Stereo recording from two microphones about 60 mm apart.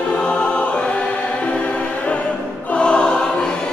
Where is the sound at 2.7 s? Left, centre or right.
Centre.